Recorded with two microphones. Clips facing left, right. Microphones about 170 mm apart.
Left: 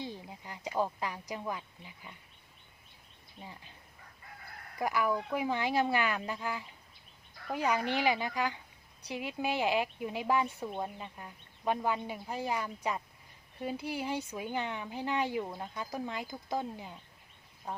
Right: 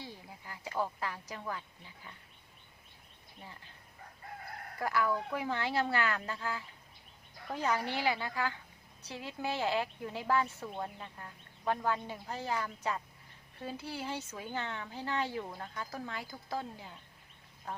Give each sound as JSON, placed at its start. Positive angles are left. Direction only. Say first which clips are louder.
{"t": 0.0, "sound": "speech", "louder": "left 6 dB", "side_deg": 20}
{"t": 3.4, "sound": "speech", "louder": "left 3 dB", "side_deg": 15}
{"t": 4.8, "sound": "speech", "louder": "left 1 dB", "side_deg": 15}